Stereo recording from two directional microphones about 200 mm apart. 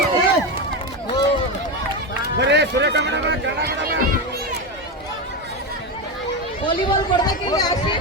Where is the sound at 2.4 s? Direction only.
60° right (ahead or behind).